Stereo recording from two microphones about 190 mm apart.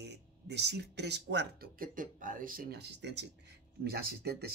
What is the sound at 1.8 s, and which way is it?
Speech, 45° right (ahead or behind).